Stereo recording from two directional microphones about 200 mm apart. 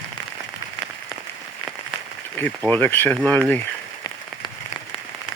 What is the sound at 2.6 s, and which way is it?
Speech, 10° left (ahead or behind).